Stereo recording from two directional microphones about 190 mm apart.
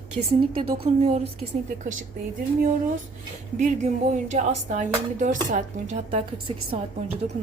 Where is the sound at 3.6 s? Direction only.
40° right (ahead or behind).